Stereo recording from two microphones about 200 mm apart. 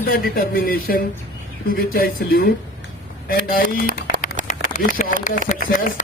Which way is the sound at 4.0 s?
45° left (ahead or behind).